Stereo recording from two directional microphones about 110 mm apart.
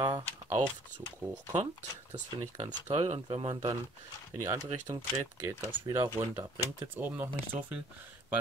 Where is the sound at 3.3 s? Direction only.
60° right (ahead or behind).